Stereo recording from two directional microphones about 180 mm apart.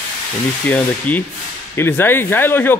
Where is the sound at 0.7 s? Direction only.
10° left (ahead or behind).